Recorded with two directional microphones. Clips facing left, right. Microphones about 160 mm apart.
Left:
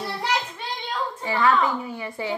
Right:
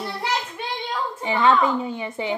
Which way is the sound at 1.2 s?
20° right (ahead or behind).